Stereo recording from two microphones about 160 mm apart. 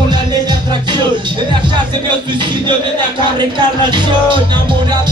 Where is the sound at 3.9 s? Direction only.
30° right (ahead or behind).